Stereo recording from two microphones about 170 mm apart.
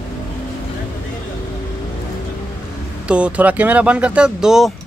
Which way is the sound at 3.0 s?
5° right (ahead or behind).